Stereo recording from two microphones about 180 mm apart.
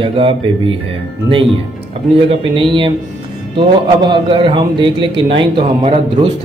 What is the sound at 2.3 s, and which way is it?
A man's voice, 25° right (ahead or behind).